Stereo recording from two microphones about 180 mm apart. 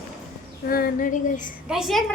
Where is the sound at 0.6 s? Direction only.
55° left (ahead or behind).